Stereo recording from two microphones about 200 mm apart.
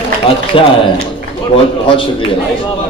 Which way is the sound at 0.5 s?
25° left (ahead or behind).